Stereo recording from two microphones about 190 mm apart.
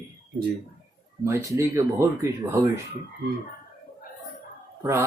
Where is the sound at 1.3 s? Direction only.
15° right (ahead or behind).